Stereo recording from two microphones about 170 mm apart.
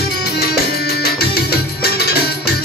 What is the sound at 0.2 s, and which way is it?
Music, 70° left (ahead or behind).